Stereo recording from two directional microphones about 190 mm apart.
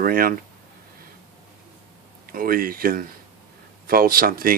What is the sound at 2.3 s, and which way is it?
Speech, 50° right (ahead or behind).